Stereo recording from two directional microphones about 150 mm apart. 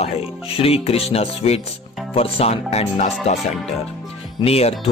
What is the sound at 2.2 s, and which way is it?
Speech, 40° left (ahead or behind).